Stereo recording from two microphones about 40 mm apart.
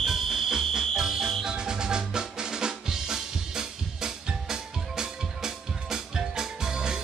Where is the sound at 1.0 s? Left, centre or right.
Centre.